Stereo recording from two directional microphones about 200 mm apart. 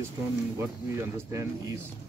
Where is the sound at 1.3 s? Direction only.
15° right (ahead or behind).